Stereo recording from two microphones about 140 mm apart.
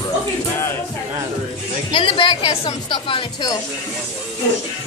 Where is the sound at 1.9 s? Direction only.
40° left (ahead or behind).